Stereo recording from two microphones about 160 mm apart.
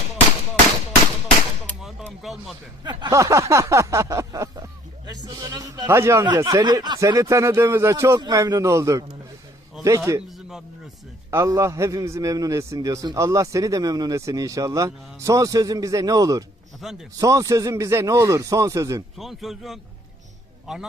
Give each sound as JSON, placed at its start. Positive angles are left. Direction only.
{"t": 2.0, "sound": "a man's voice", "side_deg": 0}
{"t": 2.8, "sound": "a man's voice", "side_deg": -25}
{"t": 10.1, "sound": "a man's voice", "side_deg": -20}
{"t": 11.3, "sound": "a man's voice", "side_deg": -20}
{"t": 16.8, "sound": "a man's voice", "side_deg": -5}
{"t": 17.2, "sound": "a man's voice", "side_deg": -20}
{"t": 19.1, "sound": "a man's voice", "side_deg": 0}